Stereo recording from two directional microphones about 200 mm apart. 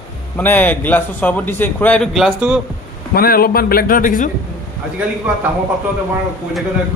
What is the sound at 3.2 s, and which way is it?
A man's voice, 50° left (ahead or behind).